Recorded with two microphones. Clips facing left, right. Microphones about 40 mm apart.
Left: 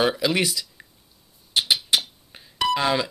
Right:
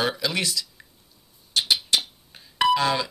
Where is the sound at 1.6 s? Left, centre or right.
Centre.